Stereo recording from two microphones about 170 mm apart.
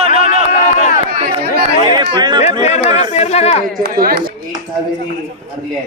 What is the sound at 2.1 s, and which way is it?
Chatter, 25° right (ahead or behind).